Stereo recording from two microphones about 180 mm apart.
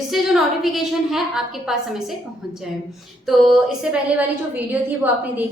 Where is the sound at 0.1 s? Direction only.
Centre (ahead or behind).